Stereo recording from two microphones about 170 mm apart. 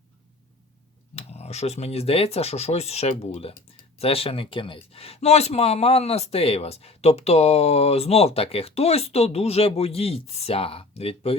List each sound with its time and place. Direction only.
1.1 s speech: 40° left (ahead or behind)